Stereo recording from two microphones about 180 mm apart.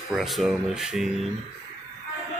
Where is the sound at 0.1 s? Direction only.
Centre (ahead or behind).